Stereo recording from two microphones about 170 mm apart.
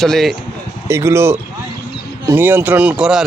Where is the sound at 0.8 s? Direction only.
15° right (ahead or behind).